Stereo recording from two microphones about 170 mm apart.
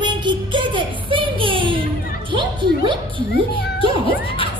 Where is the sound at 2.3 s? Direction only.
30° right (ahead or behind).